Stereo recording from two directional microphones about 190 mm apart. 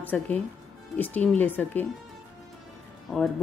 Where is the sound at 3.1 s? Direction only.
Centre (ahead or behind).